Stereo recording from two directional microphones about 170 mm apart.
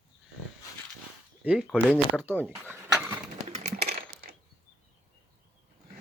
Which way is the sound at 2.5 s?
15° right (ahead or behind).